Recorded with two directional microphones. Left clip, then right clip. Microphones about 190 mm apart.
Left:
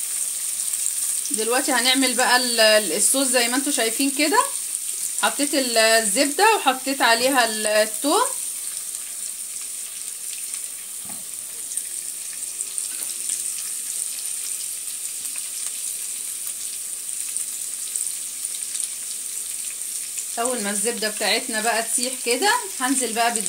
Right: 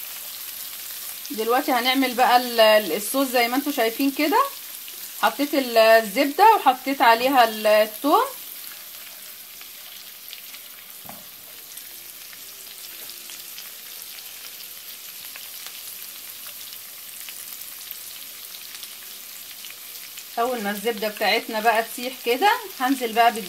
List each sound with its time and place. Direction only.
1.4 s sizzle: 15° right (ahead or behind)
20.3 s sizzle: 15° right (ahead or behind)